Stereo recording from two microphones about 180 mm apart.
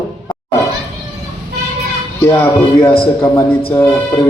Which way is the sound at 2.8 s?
30° left (ahead or behind).